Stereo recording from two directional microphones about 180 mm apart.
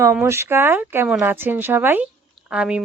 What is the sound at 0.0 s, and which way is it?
Speech, 15° right (ahead or behind).